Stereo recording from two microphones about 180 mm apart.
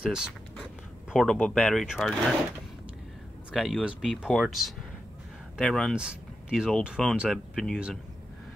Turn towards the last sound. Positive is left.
turn(degrees=0)  # may be behind; listen again after turning